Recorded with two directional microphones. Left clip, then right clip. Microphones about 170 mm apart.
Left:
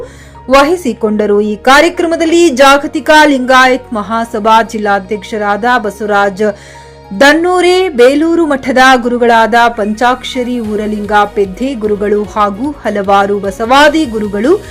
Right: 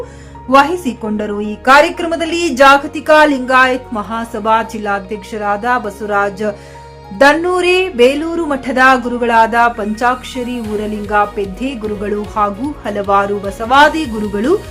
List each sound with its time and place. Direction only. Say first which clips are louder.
0.6 s a woman's voice: left 5 dB; 35° left (ahead or behind)